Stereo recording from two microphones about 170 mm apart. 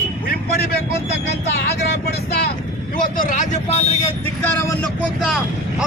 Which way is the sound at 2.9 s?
50° left (ahead or behind).